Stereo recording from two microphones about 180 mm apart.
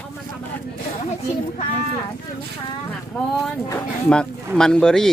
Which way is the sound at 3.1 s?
5° left (ahead or behind).